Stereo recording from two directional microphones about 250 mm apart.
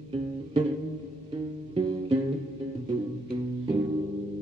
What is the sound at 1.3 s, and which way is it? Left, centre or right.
Music, right.